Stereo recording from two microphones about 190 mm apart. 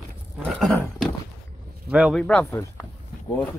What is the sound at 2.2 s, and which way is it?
Speech, 5° left (ahead or behind).